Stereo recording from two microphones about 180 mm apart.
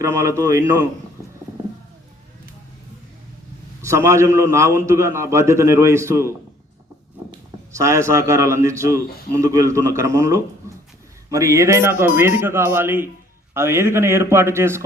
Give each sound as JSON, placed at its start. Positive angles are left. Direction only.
{"t": 0.0, "sound": "a man's voice", "side_deg": -15}
{"t": 3.8, "sound": "a man's voice", "side_deg": -15}
{"t": 7.7, "sound": "a man's voice", "side_deg": -15}